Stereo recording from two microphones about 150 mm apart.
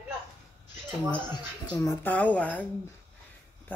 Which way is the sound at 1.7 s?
15° left (ahead or behind).